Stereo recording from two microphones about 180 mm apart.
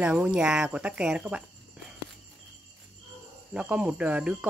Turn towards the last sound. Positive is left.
turn(degrees=-5)  # may be behind; listen again after turning